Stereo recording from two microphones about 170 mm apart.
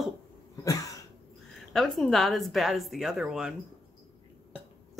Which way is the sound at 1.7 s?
Centre (ahead or behind).